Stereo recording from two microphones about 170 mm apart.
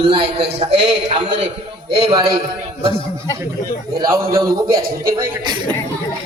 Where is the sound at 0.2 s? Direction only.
75° right (ahead or behind).